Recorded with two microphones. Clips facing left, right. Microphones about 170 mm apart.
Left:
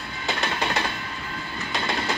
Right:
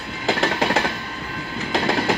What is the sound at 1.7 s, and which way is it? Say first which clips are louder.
Train: right 7 dB; 60° right (ahead or behind).